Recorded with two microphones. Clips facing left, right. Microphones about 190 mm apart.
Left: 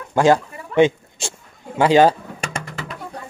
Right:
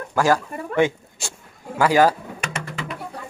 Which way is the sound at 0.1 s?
25° left (ahead or behind).